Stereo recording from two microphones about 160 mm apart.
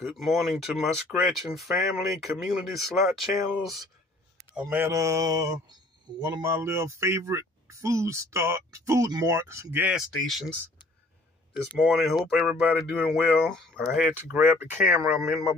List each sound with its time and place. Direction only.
0.0 s speech: centre (ahead or behind)
4.6 s speech: 15° right (ahead or behind)
9.9 s speech: centre (ahead or behind)
11.8 s speech: centre (ahead or behind)
13.9 s speech: 10° right (ahead or behind)